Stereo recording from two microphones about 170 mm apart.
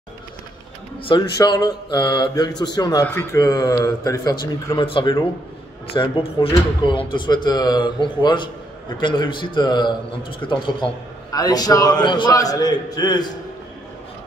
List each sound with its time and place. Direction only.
1.0 s speech: 25° left (ahead or behind)